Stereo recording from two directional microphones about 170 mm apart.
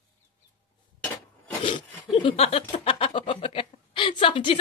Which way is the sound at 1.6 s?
30° left (ahead or behind).